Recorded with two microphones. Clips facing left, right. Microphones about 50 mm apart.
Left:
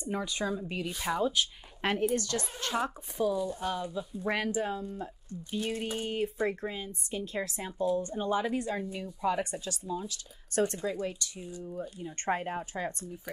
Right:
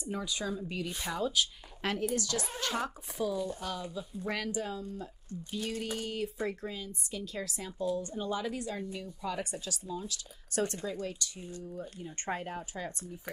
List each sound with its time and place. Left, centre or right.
0.0 s speech: left
3.3 s speech: centre
3.6 s speech: left
10.8 s speech: centre